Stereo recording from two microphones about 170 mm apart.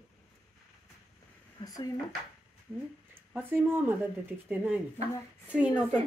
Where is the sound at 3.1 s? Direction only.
10° right (ahead or behind).